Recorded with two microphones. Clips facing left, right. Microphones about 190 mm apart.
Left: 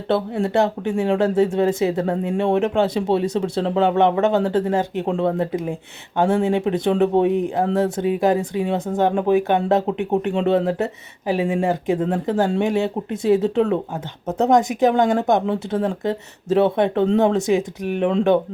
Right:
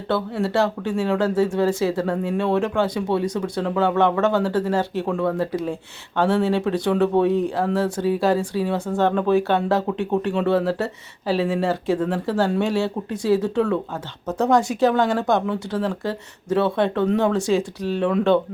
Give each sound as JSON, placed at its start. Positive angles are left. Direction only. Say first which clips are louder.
{"t": 0.1, "sound": "speech", "louder": "left 2 dB", "side_deg": 20}